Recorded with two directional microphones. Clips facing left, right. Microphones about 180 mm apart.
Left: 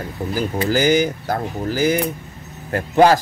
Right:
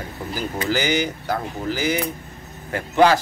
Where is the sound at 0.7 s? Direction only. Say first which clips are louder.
Left 6 dB; 45° left (ahead or behind).